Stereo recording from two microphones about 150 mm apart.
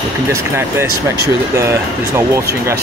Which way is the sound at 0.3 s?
15° right (ahead or behind).